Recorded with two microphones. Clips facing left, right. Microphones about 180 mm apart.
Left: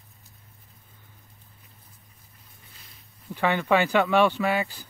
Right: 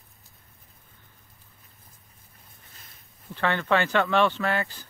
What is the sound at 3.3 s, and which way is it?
Speech, 10° left (ahead or behind).